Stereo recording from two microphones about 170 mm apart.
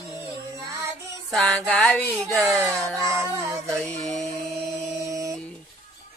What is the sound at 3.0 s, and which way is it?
Music, 15° right (ahead or behind).